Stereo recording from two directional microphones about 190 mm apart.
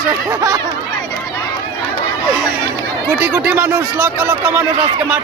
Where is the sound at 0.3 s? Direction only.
20° right (ahead or behind).